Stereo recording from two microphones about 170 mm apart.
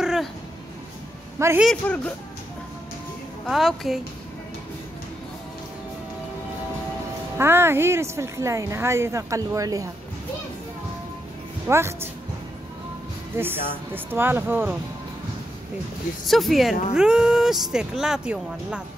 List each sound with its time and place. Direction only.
0.0 s music: 5° right (ahead or behind)
1.6 s speech: 5° left (ahead or behind)
3.4 s speech: centre (ahead or behind)
7.3 s speech: 15° right (ahead or behind)
11.6 s speech: 15° right (ahead or behind)
13.4 s speech: 10° right (ahead or behind)
16.3 s speech: centre (ahead or behind)